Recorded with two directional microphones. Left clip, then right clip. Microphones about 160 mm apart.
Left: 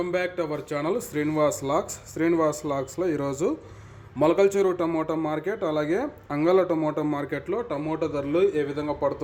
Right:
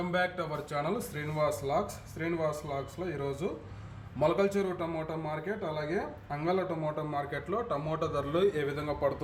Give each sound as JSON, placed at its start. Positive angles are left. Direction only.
{"t": 0.1, "sound": "speech", "side_deg": 35}
{"t": 4.2, "sound": "a man's voice", "side_deg": 45}